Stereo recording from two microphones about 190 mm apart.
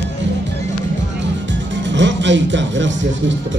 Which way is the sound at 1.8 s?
70° right (ahead or behind).